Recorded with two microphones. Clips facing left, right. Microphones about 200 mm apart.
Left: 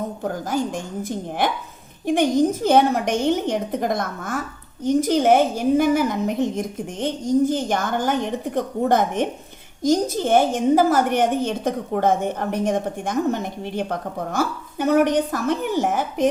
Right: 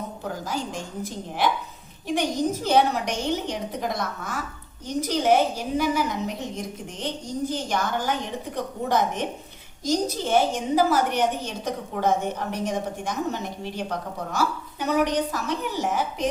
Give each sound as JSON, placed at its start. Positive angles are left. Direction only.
{"t": 0.2, "sound": "a woman's voice", "side_deg": 50}